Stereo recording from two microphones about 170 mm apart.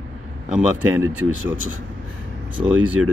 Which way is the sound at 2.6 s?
25° right (ahead or behind).